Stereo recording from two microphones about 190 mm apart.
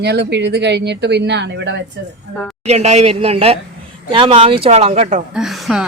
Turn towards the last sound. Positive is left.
turn(degrees=0)  # may be behind; listen again after turning